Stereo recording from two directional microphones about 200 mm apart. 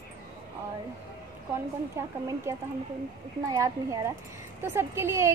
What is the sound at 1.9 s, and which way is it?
A woman's voice, 15° right (ahead or behind).